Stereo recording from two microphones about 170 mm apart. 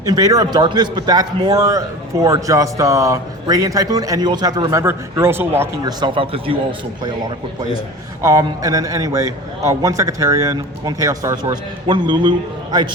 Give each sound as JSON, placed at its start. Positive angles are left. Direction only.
{"t": 0.0, "sound": "a man's voice", "side_deg": -20}
{"t": 6.0, "sound": "a man's voice", "side_deg": -30}